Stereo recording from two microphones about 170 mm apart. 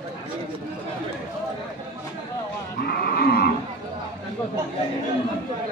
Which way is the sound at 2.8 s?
65° left (ahead or behind).